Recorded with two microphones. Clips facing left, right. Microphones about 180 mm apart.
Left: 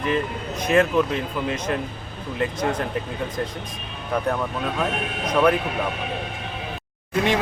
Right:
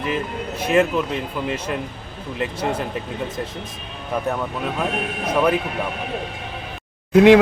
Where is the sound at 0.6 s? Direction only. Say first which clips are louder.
Even; 5° right (ahead or behind).